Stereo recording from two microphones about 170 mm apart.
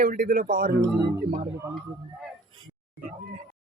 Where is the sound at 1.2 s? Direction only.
50° right (ahead or behind).